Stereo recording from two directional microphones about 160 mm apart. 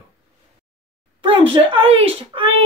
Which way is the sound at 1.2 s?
35° right (ahead or behind).